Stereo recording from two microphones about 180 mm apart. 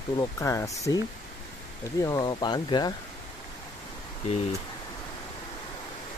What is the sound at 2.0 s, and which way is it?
Speech, 25° left (ahead or behind).